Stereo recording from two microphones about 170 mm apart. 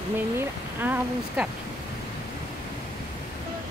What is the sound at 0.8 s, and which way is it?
Speech, 10° right (ahead or behind).